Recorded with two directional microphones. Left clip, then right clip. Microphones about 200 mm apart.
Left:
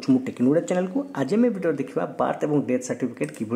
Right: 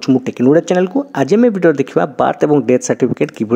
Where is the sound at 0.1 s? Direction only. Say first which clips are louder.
Right 9 dB; 25° right (ahead or behind).